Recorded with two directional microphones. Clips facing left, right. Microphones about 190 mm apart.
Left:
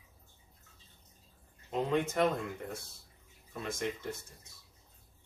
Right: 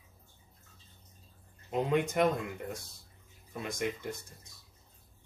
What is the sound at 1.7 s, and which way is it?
Speech, 15° right (ahead or behind).